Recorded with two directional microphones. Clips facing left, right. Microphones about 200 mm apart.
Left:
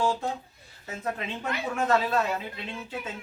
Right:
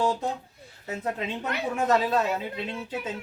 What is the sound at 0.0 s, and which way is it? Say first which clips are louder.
Speech: right 1 dB; 15° right (ahead or behind).